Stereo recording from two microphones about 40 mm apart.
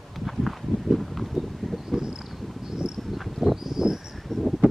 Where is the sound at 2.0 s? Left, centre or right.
Right.